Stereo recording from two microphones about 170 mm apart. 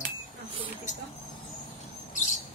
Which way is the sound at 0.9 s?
45° left (ahead or behind).